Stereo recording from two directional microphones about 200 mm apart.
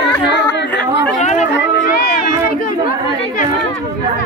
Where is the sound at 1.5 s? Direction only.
50° left (ahead or behind).